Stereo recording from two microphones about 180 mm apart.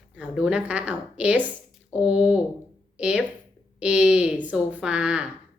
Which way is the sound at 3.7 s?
5° right (ahead or behind).